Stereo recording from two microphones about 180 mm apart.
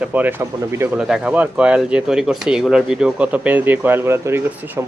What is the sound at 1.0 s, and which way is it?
Speech, 5° right (ahead or behind).